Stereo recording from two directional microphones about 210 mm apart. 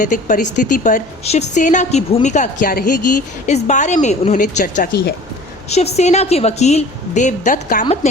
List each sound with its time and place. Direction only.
0.0 s a woman's voice: 35° left (ahead or behind)
5.6 s a woman's voice: 30° left (ahead or behind)